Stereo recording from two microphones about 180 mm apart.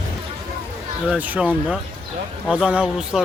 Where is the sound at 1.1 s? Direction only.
5° right (ahead or behind).